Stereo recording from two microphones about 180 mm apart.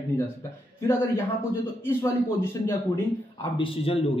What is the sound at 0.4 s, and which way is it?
A man's voice, 15° left (ahead or behind).